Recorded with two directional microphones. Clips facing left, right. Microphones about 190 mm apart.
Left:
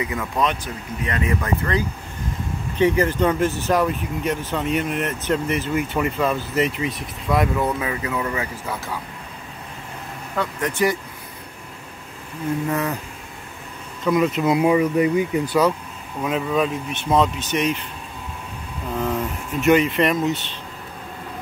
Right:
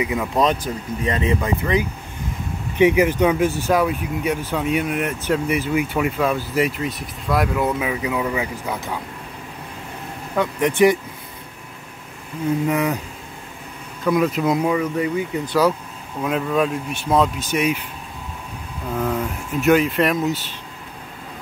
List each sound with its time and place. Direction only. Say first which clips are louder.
0.0 s speech: right 4 dB; 15° right (ahead or behind)
1.0 s speech: right 3 dB; 30° right (ahead or behind)
1.4 s speech: right 2 dB; 15° right (ahead or behind)
10.3 s speech: right 5 dB; 20° right (ahead or behind)
12.6 s speech: right 3 dB; 15° right (ahead or behind)
14.0 s speech: even; centre (ahead or behind)
14.7 s speech: left 3 dB; 15° left (ahead or behind)
16.2 s speech: right 1 dB; centre (ahead or behind)
18.9 s speech: right 1 dB; centre (ahead or behind)